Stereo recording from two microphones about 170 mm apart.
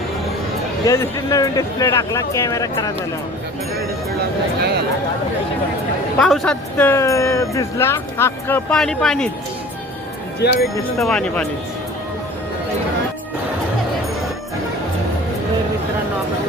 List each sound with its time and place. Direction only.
0.9 s speech: 20° left (ahead or behind)
6.1 s speech: 5° left (ahead or behind)
10.4 s speech: 75° left (ahead or behind)
11.0 s speech: 5° left (ahead or behind)